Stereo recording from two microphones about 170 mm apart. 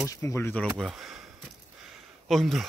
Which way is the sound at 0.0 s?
20° left (ahead or behind).